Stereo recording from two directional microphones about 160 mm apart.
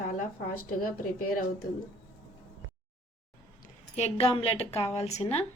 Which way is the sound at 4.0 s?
40° left (ahead or behind).